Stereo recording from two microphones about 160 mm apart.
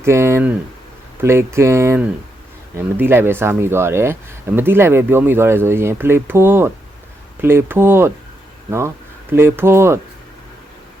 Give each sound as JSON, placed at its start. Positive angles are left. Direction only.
{"t": 0.0, "sound": "speech", "side_deg": -15}
{"t": 9.3, "sound": "speech", "side_deg": -15}